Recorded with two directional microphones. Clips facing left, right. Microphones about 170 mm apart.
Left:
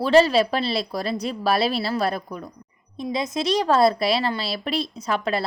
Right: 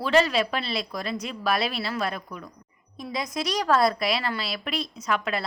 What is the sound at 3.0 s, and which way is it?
A woman's voice, 25° left (ahead or behind).